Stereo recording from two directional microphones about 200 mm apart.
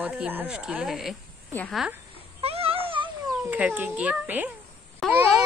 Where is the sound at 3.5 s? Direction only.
10° right (ahead or behind).